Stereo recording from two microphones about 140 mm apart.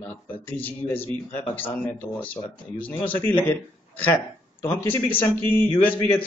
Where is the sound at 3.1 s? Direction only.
15° left (ahead or behind).